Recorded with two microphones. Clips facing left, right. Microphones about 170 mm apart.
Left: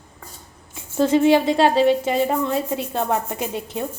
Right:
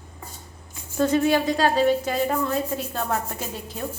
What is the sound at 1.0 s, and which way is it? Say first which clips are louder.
A woman's voice: left 4 dB; 25° left (ahead or behind).